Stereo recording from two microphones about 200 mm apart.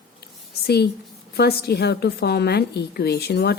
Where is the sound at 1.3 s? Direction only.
55° left (ahead or behind).